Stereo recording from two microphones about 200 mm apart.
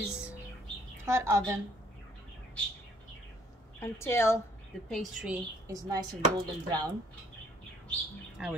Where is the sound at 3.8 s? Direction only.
10° left (ahead or behind).